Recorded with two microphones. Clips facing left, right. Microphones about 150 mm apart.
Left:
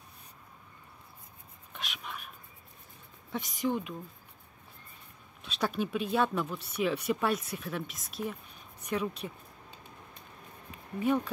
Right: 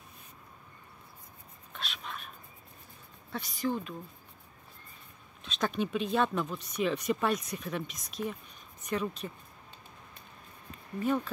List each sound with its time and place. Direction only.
1.7 s whispering: 15° left (ahead or behind)
3.3 s speech: 15° left (ahead or behind)
5.4 s speech: 10° left (ahead or behind)
10.7 s a sound: 10° left (ahead or behind)